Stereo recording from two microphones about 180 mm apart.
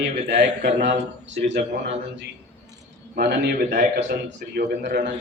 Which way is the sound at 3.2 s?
60° right (ahead or behind).